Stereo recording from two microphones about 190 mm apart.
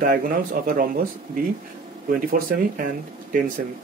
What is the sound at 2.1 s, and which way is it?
Speech, 45° right (ahead or behind).